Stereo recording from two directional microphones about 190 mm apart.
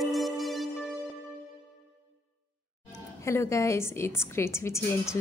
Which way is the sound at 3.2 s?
15° left (ahead or behind).